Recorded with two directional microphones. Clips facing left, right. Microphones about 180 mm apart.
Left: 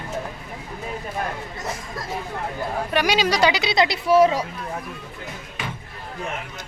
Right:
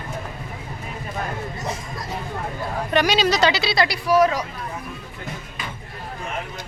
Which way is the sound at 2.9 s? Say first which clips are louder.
Right 2 dB; 10° left (ahead or behind).